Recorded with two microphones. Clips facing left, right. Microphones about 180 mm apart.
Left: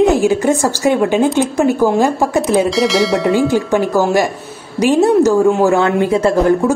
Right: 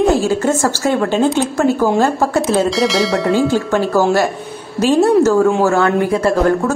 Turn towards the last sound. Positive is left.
turn(degrees=20)  # may be behind; listen again after turning